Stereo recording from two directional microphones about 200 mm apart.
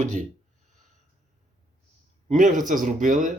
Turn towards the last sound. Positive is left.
turn(degrees=-40)  # may be behind; listen again after turning